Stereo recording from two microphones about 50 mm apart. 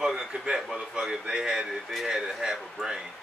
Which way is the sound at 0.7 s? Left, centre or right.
Centre.